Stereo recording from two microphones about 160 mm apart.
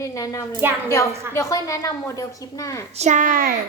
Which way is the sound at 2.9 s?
45° right (ahead or behind).